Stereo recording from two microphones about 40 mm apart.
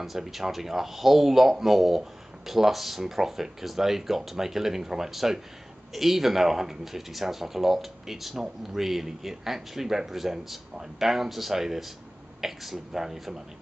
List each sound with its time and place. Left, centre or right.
0.0 s speech: centre